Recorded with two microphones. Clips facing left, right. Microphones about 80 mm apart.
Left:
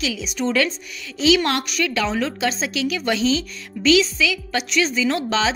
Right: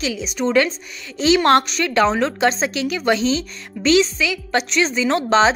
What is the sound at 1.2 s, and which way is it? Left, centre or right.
A woman's voice, right.